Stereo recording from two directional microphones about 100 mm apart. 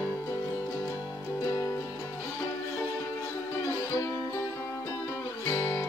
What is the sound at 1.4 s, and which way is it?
Music, 30° left (ahead or behind).